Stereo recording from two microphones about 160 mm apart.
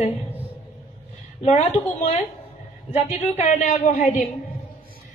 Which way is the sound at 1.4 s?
45° left (ahead or behind).